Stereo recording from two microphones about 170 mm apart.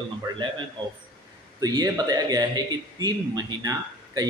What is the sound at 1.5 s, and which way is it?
A man's voice, 20° right (ahead or behind).